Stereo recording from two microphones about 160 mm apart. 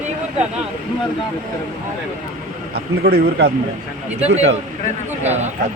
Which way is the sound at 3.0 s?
75° right (ahead or behind).